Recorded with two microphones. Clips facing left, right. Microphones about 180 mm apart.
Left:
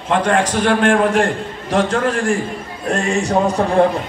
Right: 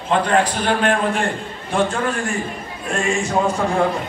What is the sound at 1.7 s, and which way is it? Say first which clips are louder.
Speech: left 3 dB; 90° left.